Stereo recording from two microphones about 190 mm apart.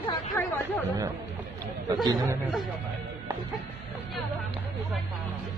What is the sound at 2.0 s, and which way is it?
Speech, 20° right (ahead or behind).